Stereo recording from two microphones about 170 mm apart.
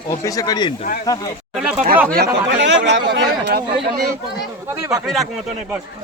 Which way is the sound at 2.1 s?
80° right.